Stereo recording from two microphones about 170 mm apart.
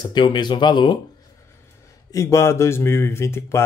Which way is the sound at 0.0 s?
25° left (ahead or behind).